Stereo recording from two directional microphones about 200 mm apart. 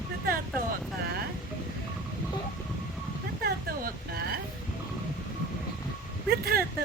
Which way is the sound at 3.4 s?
50° right (ahead or behind).